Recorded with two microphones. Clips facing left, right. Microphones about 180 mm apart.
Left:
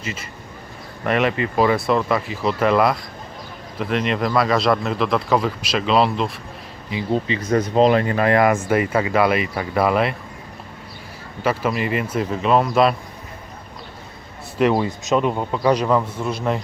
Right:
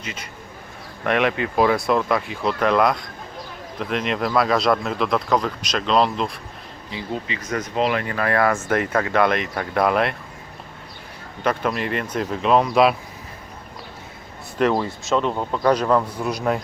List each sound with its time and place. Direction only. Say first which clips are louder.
1.0 s speech: left 1 dB; centre (ahead or behind)
7.1 s speech: left 8 dB; 30° left (ahead or behind); by 10.2 s centre (ahead or behind)
11.4 s speech: left 1 dB; 5° left (ahead or behind)
14.6 s speech: left 2 dB; 10° left (ahead or behind)